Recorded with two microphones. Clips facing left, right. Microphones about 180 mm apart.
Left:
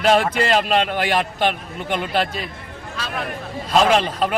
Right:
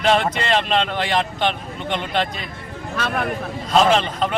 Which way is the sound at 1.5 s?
5° left (ahead or behind).